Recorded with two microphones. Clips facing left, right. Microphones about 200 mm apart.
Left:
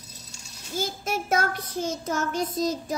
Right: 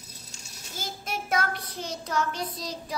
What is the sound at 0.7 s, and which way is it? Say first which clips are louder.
Child singing: left 7 dB; 45° left (ahead or behind).